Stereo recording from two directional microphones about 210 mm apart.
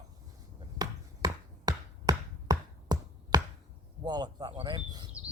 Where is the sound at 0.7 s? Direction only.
20° right (ahead or behind).